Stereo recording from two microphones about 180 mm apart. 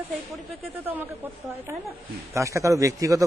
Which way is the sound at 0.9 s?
10° right (ahead or behind).